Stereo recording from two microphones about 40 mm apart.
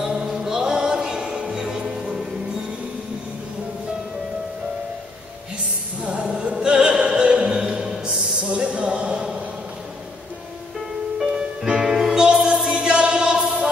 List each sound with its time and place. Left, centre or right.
0.0 s music: centre
6.0 s opera: right
8.0 s a sound: right
11.1 s music: right